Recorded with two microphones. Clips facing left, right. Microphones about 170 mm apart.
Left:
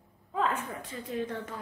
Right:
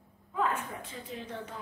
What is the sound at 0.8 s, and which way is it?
Speech, 50° left (ahead or behind).